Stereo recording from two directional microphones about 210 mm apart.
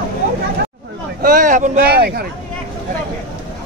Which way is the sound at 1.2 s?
40° right (ahead or behind).